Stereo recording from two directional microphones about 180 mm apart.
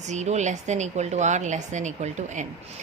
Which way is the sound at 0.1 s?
40° right (ahead or behind).